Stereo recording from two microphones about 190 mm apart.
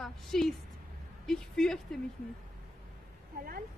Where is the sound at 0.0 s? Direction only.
Centre (ahead or behind).